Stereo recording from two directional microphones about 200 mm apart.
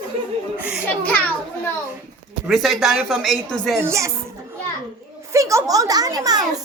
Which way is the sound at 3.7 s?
15° right (ahead or behind).